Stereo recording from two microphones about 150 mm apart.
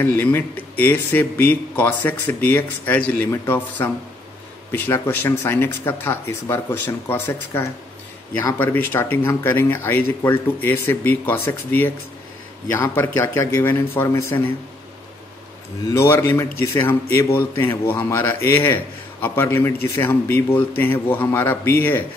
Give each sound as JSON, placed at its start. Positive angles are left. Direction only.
{"t": 0.0, "sound": "a man's voice", "side_deg": 15}
{"t": 15.9, "sound": "a man's voice", "side_deg": 15}